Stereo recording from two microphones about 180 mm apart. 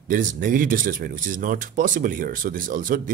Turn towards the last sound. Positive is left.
turn(degrees=-50)  # may be behind; listen again after turning